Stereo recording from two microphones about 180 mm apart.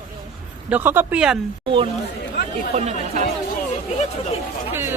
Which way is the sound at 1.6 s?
30° right (ahead or behind).